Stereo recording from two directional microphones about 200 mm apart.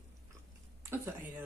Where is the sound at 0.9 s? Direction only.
15° right (ahead or behind).